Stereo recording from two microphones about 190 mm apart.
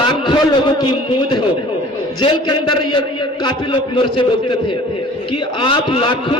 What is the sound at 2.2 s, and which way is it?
A man's voice, 25° left (ahead or behind).